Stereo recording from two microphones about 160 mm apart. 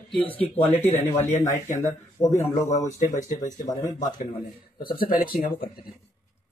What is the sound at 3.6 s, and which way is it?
Speech, 20° left (ahead or behind).